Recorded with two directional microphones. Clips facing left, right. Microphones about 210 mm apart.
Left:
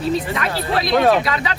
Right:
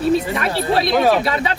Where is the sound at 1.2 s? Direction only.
30° right (ahead or behind).